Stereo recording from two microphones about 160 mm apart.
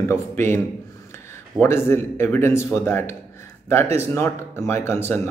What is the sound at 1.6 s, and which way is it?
A man's voice, 15° left (ahead or behind).